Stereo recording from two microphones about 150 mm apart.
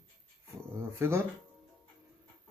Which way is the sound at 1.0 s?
15° right (ahead or behind).